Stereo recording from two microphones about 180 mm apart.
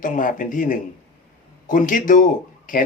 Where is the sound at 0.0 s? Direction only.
50° left (ahead or behind).